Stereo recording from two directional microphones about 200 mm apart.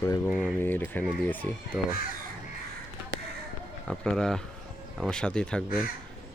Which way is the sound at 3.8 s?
5° left (ahead or behind).